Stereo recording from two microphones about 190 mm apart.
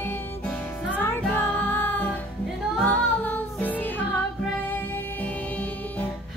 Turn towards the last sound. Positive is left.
turn(degrees=10)  # may be behind; listen again after turning